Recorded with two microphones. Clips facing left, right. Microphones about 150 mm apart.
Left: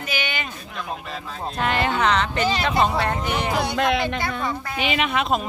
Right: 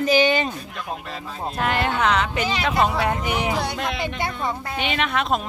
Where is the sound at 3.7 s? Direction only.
80° left.